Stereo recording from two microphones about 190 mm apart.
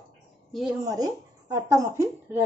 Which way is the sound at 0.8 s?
20° right (ahead or behind).